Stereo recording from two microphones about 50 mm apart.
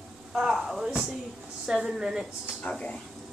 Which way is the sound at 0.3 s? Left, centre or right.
Centre.